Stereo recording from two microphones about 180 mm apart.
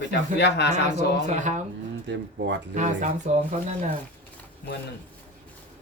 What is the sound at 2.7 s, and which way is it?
Speech, 40° right (ahead or behind).